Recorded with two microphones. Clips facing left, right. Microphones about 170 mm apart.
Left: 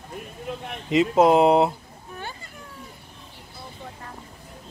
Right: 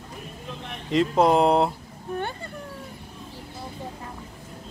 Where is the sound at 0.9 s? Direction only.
5° left (ahead or behind).